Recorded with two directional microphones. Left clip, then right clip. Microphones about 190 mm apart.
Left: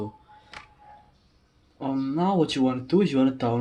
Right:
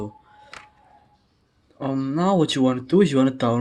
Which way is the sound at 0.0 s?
25° right (ahead or behind).